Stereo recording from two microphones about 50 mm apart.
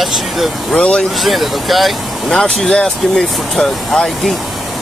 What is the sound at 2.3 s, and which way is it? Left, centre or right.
Speech, centre.